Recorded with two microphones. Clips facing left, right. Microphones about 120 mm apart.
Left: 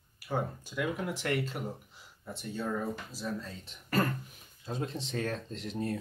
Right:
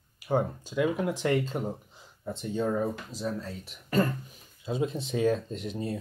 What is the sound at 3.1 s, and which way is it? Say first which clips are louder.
Speech: right 4 dB; 15° right (ahead or behind).